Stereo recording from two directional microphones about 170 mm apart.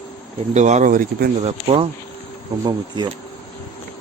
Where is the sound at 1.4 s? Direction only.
35° right (ahead or behind).